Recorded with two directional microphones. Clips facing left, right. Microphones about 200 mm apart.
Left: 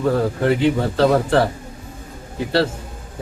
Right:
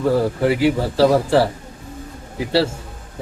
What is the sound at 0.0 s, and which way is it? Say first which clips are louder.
Speech: right 1 dB; 5° right (ahead or behind).